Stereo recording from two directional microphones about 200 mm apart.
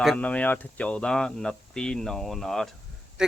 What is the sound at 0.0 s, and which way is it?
Speech, 5° left (ahead or behind).